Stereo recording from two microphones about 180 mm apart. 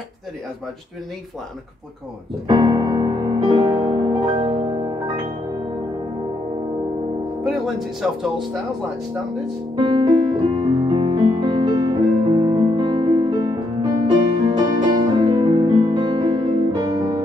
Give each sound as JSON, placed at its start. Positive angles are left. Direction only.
{"t": 2.4, "sound": "music", "side_deg": -25}
{"t": 7.4, "sound": "speech", "side_deg": 0}
{"t": 9.8, "sound": "music", "side_deg": -25}